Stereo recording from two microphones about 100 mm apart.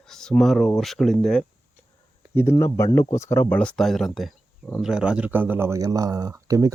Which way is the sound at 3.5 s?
5° left (ahead or behind).